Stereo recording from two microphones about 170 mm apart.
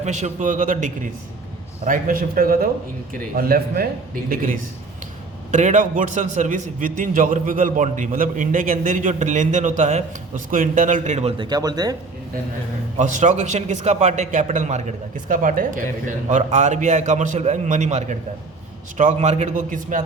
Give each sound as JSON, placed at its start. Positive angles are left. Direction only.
{"t": 0.0, "sound": "a man's voice", "side_deg": -45}
{"t": 5.5, "sound": "a man's voice", "side_deg": -45}
{"t": 11.4, "sound": "speech", "side_deg": -25}
{"t": 13.0, "sound": "a man's voice", "side_deg": -45}